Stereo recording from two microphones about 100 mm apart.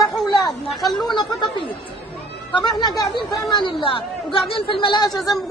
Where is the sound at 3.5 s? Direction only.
55° left (ahead or behind).